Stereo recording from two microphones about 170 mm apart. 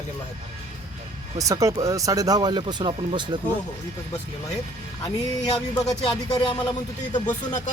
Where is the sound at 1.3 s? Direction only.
20° right (ahead or behind).